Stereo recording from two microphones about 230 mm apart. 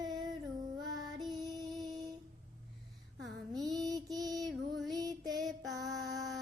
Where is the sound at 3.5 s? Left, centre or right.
Centre.